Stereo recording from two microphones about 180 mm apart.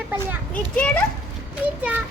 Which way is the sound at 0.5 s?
5° left (ahead or behind).